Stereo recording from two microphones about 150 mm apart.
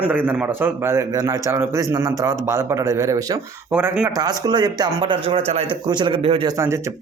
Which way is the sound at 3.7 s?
10° right (ahead or behind).